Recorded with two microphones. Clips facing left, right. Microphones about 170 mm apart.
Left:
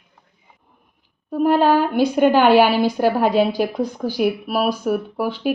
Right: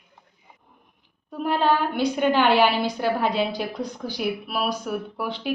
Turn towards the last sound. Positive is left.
turn(degrees=45)  # may be behind; listen again after turning